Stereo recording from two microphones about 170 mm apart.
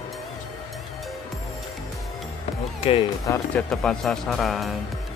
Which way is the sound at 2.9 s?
40° left (ahead or behind).